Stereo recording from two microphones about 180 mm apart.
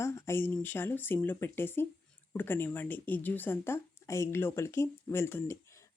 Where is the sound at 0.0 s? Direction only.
15° left (ahead or behind).